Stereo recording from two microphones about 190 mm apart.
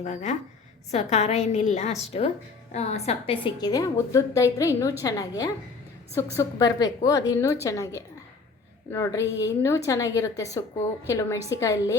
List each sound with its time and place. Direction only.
0.0 s a woman's voice: 40° left (ahead or behind); by 11.9 s 15° left (ahead or behind)